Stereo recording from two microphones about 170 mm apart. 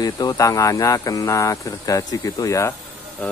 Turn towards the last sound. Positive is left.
turn(degrees=5)  # may be behind; listen again after turning